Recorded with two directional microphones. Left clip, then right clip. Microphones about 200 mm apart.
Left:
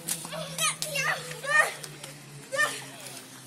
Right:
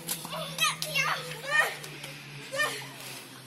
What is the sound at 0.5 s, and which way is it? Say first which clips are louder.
Children playing: right 2 dB; 15° left (ahead or behind).